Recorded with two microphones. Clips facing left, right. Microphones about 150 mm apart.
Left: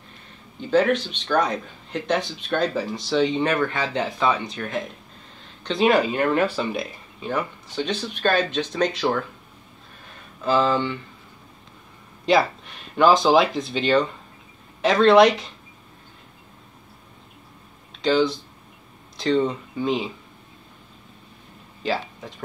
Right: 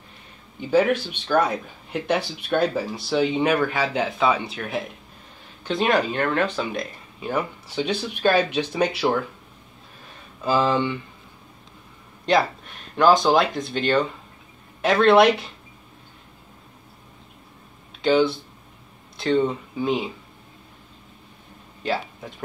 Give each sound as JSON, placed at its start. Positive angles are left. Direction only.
{"t": 0.6, "sound": "speech", "side_deg": -10}
{"t": 7.2, "sound": "speech", "side_deg": -5}
{"t": 10.6, "sound": "speech", "side_deg": -20}
{"t": 12.3, "sound": "speech", "side_deg": 0}
{"t": 18.0, "sound": "speech", "side_deg": -5}
{"t": 21.8, "sound": "speech", "side_deg": 0}